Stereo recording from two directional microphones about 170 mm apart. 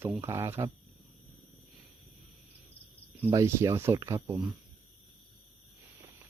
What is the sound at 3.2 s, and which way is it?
Speech, 15° right (ahead or behind).